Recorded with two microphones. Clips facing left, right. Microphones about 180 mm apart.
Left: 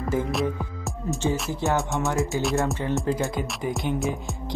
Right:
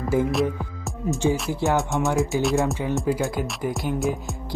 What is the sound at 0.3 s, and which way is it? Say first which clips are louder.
Music: right 3 dB; centre (ahead or behind).